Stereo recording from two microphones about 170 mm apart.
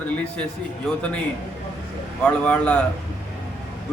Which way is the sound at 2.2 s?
10° left (ahead or behind).